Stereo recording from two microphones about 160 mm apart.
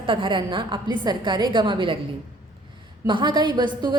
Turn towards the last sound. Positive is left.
turn(degrees=-30)  # may be behind; listen again after turning